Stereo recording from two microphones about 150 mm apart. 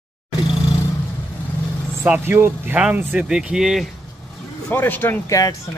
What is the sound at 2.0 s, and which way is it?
Speech, 10° right (ahead or behind).